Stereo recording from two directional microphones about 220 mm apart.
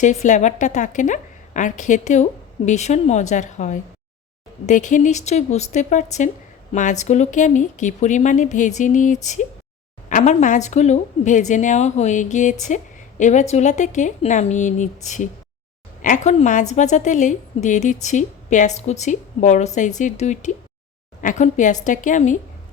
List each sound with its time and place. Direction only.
0.0 s a woman's voice: 35° left (ahead or behind)